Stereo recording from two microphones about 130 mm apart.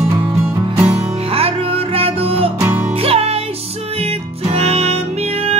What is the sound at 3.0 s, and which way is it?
Music, 50° right (ahead or behind).